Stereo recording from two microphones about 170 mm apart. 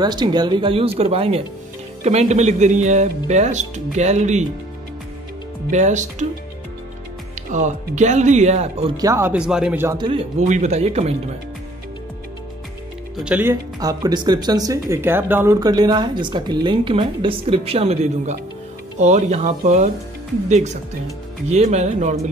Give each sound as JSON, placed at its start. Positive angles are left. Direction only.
{"t": 0.0, "sound": "speech", "side_deg": -25}
{"t": 5.7, "sound": "speech", "side_deg": -45}
{"t": 7.5, "sound": "speech", "side_deg": -45}
{"t": 8.9, "sound": "speech", "side_deg": -20}
{"t": 9.9, "sound": "speech", "side_deg": -30}
{"t": 10.4, "sound": "speech", "side_deg": -45}
{"t": 13.2, "sound": "speech", "side_deg": -10}